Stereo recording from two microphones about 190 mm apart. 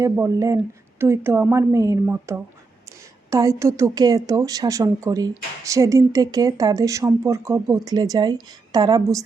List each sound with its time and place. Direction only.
0.0 s a woman's voice: 15° right (ahead or behind)